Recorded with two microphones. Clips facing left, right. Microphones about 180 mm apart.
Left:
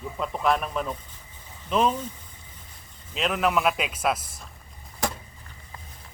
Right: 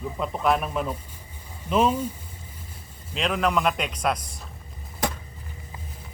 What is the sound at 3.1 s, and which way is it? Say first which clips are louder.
A man's voice: even; centre (ahead or behind).